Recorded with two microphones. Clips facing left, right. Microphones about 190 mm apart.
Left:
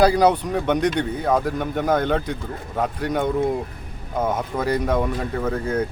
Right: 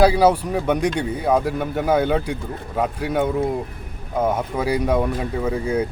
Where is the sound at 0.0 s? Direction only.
5° right (ahead or behind).